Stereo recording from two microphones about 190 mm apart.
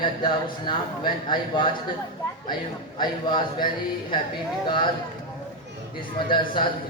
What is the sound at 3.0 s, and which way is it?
Speech, 25° left (ahead or behind).